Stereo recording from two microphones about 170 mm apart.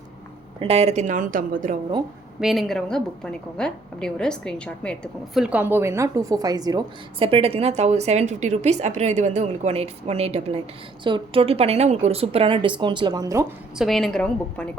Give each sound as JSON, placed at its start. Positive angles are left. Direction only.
{"t": 0.6, "sound": "a woman's voice", "side_deg": -35}
{"t": 2.4, "sound": "a woman's voice", "side_deg": 0}
{"t": 13.7, "sound": "a woman's voice", "side_deg": 0}